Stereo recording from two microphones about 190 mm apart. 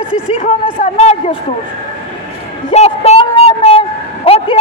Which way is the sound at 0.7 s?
40° left (ahead or behind).